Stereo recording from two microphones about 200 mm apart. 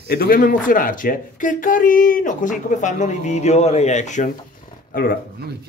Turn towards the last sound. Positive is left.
turn(degrees=45)  # may be behind; listen again after turning